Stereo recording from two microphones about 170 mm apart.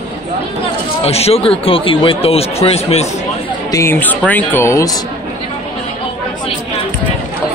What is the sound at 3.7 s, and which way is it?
Speech, 15° left (ahead or behind).